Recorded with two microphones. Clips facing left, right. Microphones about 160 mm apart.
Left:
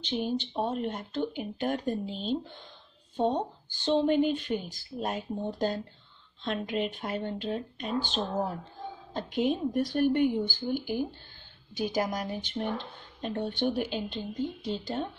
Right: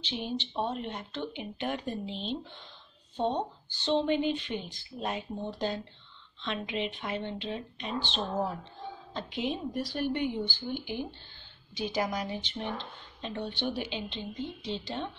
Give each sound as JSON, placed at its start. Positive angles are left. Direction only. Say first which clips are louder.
{"t": 0.0, "sound": "speech", "louder": "left 4 dB", "side_deg": 45}